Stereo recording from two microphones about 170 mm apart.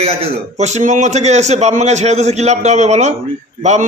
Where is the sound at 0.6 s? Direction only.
45° right (ahead or behind).